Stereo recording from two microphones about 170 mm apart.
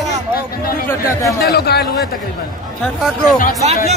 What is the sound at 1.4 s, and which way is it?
Speech, 70° left (ahead or behind).